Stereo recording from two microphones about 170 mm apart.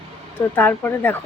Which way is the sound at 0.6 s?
10° left (ahead or behind).